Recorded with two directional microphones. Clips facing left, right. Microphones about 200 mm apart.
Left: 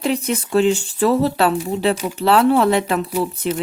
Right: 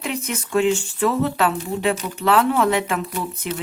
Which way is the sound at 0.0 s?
35° left (ahead or behind).